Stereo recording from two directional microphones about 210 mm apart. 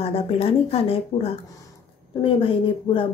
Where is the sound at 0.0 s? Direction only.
25° left (ahead or behind).